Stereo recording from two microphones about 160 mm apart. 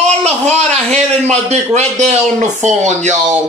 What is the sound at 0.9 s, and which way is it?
Speech, 45° right (ahead or behind).